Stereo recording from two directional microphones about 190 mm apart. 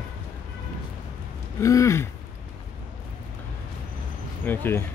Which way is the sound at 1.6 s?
15° left (ahead or behind).